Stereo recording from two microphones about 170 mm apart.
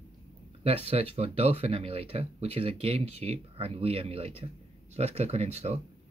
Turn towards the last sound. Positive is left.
turn(degrees=-40)  # may be behind; listen again after turning